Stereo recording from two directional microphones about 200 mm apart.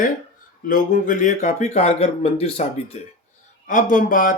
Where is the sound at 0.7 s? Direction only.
40° left (ahead or behind).